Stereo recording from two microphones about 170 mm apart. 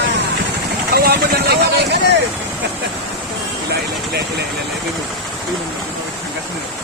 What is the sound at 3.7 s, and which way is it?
Vehicle, 70° right (ahead or behind).